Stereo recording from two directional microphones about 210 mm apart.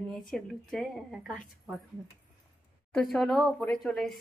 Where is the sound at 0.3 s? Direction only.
Centre (ahead or behind).